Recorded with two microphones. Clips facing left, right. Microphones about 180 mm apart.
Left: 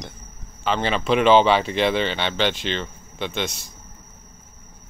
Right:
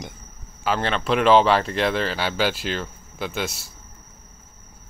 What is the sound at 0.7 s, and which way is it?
Speech, centre (ahead or behind).